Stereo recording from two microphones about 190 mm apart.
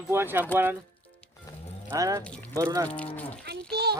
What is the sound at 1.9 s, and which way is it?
Speech, 15° right (ahead or behind).